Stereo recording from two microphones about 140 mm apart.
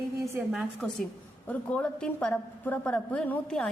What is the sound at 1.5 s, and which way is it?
A woman's voice, 10° left (ahead or behind).